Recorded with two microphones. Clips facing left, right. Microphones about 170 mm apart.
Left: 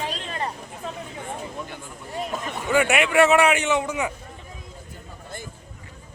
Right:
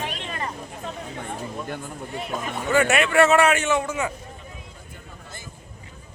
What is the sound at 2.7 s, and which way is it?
A man's voice, 15° left (ahead or behind).